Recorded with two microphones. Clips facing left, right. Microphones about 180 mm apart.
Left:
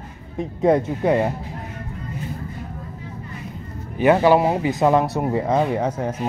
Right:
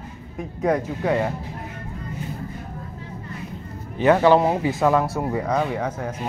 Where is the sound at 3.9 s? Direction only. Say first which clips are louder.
Left 1 dB; 10° left (ahead or behind).